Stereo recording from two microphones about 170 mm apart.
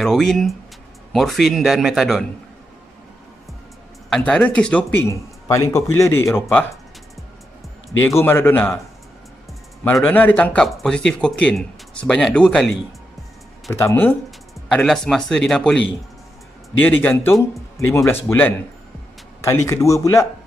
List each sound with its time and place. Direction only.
0.0 s speech: centre (ahead or behind)
4.1 s speech: 5° left (ahead or behind)
8.0 s speech: 15° left (ahead or behind)
10.0 s speech: 10° left (ahead or behind)
13.7 s speech: 15° left (ahead or behind)
14.7 s speech: 5° left (ahead or behind)
16.8 s speech: 10° left (ahead or behind)